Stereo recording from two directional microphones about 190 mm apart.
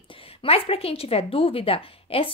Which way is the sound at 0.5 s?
30° left (ahead or behind).